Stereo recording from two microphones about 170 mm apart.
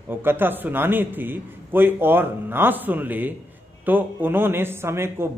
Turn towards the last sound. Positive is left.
turn(degrees=-15)  # may be behind; listen again after turning